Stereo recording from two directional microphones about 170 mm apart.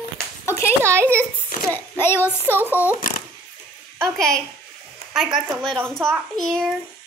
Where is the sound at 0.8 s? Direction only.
15° right (ahead or behind).